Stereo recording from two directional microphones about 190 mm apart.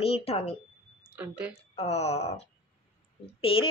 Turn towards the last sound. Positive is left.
turn(degrees=30)  # may be behind; listen again after turning